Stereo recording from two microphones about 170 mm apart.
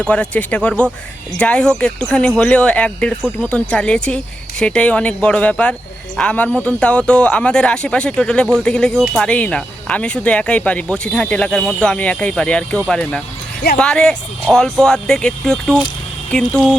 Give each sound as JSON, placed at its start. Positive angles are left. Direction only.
{"t": 0.0, "sound": "speech", "side_deg": 5}